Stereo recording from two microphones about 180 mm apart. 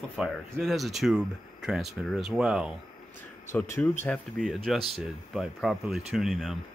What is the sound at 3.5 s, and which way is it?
Speech, 10° left (ahead or behind).